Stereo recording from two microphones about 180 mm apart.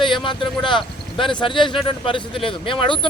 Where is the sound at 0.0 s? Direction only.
25° left (ahead or behind).